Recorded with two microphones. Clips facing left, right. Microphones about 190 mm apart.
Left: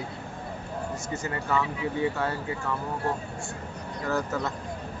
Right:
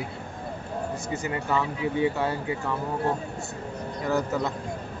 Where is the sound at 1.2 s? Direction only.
20° right (ahead or behind).